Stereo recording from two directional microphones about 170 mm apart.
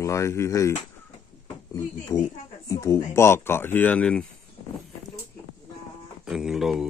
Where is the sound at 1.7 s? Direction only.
20° left (ahead or behind); by 4.3 s 5° left (ahead or behind).